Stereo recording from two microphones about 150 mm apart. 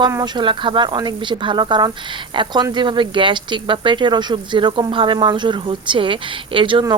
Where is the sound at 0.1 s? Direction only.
25° right (ahead or behind).